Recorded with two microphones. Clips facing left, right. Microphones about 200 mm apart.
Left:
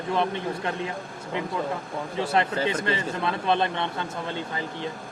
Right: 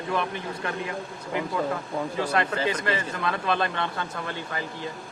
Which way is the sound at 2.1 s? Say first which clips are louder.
Left 3 dB; 25° left (ahead or behind).